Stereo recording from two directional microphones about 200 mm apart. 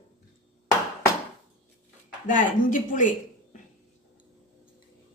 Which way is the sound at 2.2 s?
40° left (ahead or behind).